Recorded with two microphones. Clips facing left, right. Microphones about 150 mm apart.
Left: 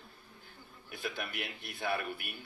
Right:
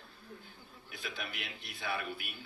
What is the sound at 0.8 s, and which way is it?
Speech, 55° left (ahead or behind).